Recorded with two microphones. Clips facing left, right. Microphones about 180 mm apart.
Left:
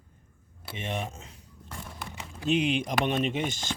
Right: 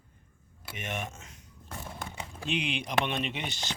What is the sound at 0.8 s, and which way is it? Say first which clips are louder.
Speech: left 3 dB; 30° left (ahead or behind).